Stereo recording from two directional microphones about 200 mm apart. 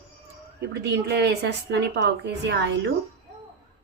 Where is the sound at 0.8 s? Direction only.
55° right (ahead or behind).